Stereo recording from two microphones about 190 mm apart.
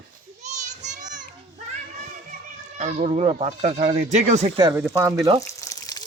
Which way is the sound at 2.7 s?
35° right (ahead or behind).